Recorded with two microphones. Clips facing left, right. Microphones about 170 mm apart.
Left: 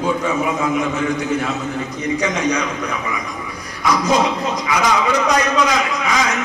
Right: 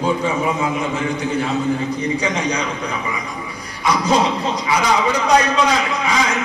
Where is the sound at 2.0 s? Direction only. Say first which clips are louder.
Left 1 dB; 30° right (ahead or behind).